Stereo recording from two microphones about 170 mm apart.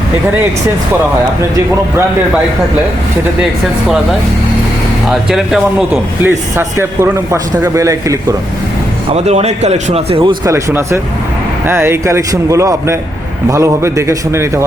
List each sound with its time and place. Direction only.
5.0 s speech: centre (ahead or behind)
5.9 s a man's voice: 15° right (ahead or behind)
9.1 s speech: 40° right (ahead or behind)
10.4 s speech: 15° right (ahead or behind)